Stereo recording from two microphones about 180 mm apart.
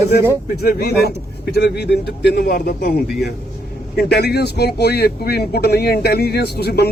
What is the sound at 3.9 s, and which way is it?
Speech, 60° left (ahead or behind).